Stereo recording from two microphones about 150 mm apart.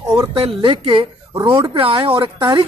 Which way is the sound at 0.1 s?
35° right (ahead or behind).